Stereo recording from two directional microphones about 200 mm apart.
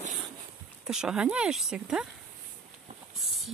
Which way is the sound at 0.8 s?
5° right (ahead or behind).